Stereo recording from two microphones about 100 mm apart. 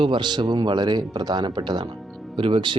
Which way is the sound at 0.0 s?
50° right (ahead or behind).